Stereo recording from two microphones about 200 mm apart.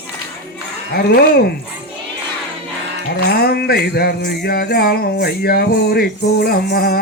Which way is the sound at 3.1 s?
50° left (ahead or behind).